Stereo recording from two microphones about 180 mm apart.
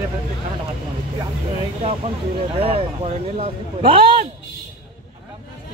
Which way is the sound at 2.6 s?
30° right (ahead or behind).